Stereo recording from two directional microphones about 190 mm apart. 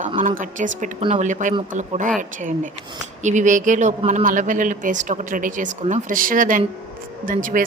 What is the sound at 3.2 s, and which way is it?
Speech, 40° right (ahead or behind).